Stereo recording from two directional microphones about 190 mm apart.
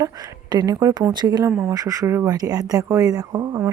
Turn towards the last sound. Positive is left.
turn(degrees=-20)  # may be behind; listen again after turning